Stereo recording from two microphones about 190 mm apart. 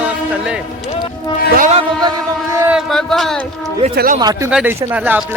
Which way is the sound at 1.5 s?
45° right (ahead or behind).